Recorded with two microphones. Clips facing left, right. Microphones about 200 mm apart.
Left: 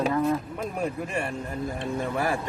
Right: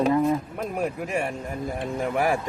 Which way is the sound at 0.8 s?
10° right (ahead or behind).